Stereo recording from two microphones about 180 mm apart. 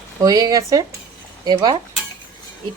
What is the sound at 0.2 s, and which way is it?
Speech, 20° right (ahead or behind).